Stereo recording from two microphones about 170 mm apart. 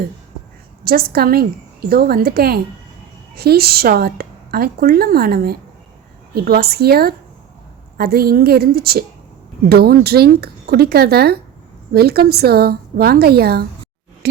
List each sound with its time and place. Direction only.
0.9 s a woman's voice: 65° right (ahead or behind)